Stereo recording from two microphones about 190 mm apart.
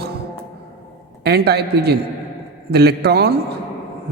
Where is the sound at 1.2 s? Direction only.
60° right (ahead or behind).